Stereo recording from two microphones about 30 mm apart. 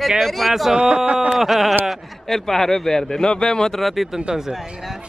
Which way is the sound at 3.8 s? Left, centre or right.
Centre.